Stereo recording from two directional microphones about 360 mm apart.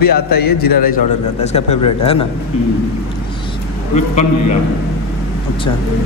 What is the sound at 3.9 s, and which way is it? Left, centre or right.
Speech, centre.